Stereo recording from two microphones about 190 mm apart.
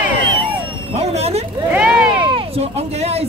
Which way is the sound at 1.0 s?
35° right (ahead or behind).